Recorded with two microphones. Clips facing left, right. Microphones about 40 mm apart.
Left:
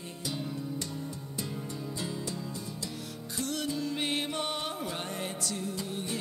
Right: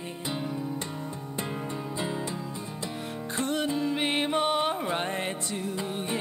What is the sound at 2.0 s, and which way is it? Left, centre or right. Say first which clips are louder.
Music: right 5 dB; right.